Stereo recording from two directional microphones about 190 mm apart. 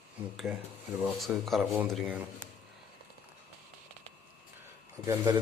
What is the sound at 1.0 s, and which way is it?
Speech, centre (ahead or behind).